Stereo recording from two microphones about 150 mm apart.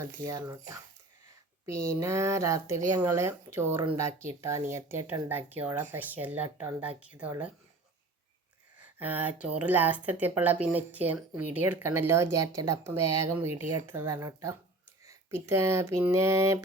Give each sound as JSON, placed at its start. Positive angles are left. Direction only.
{"t": 0.0, "sound": "speech", "side_deg": -25}
{"t": 9.0, "sound": "speech", "side_deg": -10}